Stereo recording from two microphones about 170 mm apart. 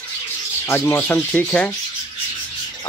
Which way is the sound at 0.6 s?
15° left (ahead or behind).